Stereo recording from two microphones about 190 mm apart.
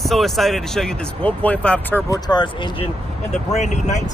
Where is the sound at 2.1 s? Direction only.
20° left (ahead or behind).